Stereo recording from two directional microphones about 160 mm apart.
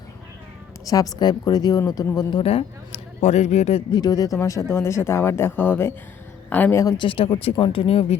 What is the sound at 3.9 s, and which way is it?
Speech, 25° left (ahead or behind).